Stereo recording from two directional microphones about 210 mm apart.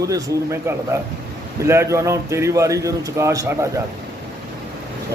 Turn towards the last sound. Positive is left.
turn(degrees=-15)  # may be behind; listen again after turning